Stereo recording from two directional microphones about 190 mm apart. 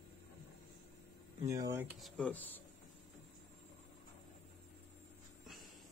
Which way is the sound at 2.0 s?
5° left (ahead or behind).